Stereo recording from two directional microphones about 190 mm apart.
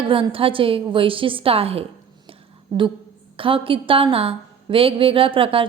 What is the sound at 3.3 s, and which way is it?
A woman's voice, 30° right (ahead or behind).